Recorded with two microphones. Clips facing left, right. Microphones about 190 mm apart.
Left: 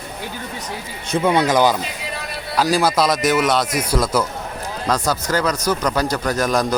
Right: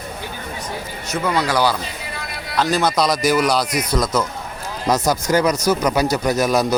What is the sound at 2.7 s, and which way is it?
Speech, 5° left (ahead or behind).